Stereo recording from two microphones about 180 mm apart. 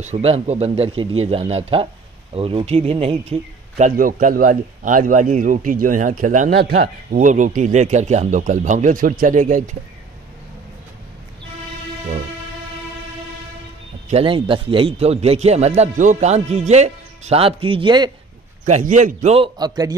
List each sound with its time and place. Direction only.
0.0 s a man's voice: 35° right (ahead or behind)
14.0 s a man's voice: 30° right (ahead or behind)
18.7 s a man's voice: 40° right (ahead or behind); by 19.9 s 20° right (ahead or behind)